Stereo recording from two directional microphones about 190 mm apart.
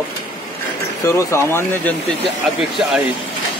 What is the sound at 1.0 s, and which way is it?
Speech, 15° left (ahead or behind).